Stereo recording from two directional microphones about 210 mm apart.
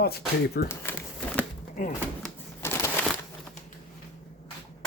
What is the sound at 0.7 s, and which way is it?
Crumpling, 10° left (ahead or behind).